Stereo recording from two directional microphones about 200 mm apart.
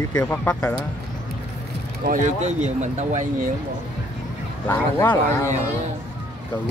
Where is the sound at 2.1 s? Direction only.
35° right (ahead or behind).